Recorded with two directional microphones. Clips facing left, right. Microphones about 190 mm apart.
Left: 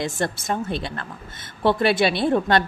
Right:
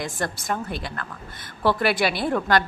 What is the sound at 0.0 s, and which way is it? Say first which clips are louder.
Speech: left 3 dB; 25° left (ahead or behind).